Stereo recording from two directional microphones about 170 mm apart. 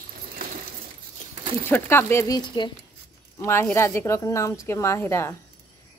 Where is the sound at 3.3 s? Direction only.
15° left (ahead or behind).